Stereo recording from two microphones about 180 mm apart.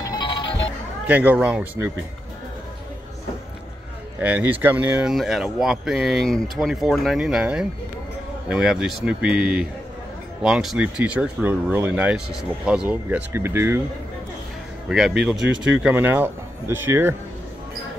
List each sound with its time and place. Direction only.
0.0 s music: 25° left (ahead or behind)
1.0 s speech: 10° right (ahead or behind)
4.2 s speech: 10° right (ahead or behind)
14.9 s speech: centre (ahead or behind)
15.3 s speech: 85° right
15.7 s speech: 10° right (ahead or behind)